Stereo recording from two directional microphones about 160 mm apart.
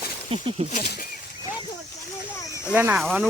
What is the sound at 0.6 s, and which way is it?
Speech, 40° right (ahead or behind).